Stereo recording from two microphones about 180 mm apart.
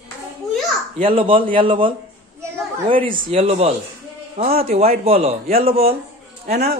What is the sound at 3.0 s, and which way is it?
Speech, 30° right (ahead or behind).